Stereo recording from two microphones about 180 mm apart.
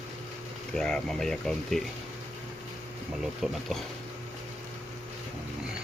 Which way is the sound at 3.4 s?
Centre (ahead or behind).